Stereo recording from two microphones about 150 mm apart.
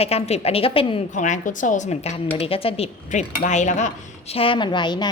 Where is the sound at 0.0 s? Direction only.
45° left (ahead or behind).